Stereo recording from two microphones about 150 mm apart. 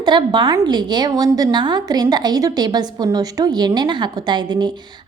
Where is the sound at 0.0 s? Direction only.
30° right (ahead or behind).